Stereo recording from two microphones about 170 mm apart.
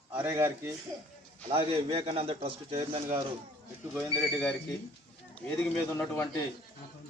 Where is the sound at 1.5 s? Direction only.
35° right (ahead or behind).